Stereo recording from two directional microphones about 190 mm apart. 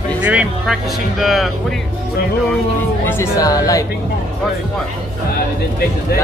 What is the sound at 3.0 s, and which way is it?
Speech, 10° left (ahead or behind).